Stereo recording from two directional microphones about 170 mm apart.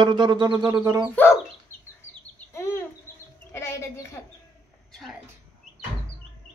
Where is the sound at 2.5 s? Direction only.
15° left (ahead or behind).